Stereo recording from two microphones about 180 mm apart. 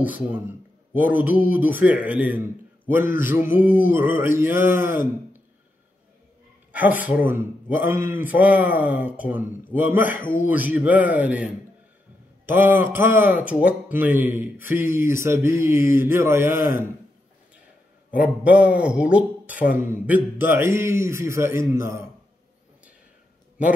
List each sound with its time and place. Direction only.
0.0 s a man's voice: 10° right (ahead or behind)
6.7 s a man's voice: 10° right (ahead or behind)
10.2 s a man's voice: 45° left (ahead or behind)
10.5 s a man's voice: 10° right (ahead or behind)
18.1 s a man's voice: 10° right (ahead or behind)